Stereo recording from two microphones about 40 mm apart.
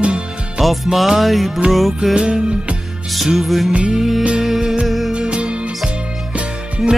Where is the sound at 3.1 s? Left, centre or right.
Centre.